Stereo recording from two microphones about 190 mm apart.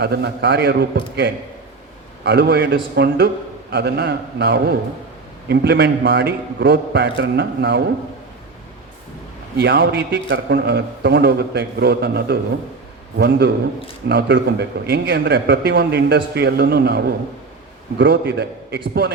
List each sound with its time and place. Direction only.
0.0 s a man's voice: 60° right (ahead or behind)
9.6 s a man's voice: 60° right (ahead or behind)